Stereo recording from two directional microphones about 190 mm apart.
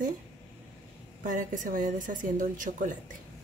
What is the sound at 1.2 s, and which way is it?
Speech, 45° right (ahead or behind).